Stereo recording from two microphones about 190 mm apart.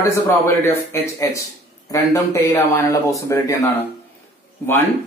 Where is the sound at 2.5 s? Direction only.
15° left (ahead or behind).